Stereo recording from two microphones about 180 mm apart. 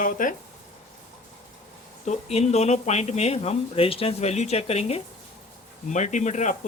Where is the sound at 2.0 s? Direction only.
40° left (ahead or behind).